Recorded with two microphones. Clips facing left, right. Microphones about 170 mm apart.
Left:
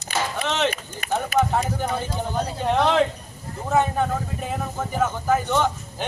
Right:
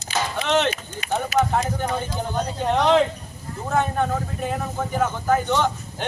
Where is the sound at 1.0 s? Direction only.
50° left (ahead or behind).